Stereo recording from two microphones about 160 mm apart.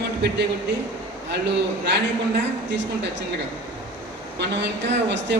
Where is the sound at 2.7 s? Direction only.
90° right.